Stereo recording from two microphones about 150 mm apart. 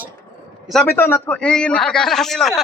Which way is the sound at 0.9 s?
15° left (ahead or behind).